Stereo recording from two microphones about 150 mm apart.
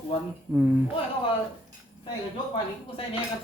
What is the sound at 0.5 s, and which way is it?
Speech, 10° right (ahead or behind).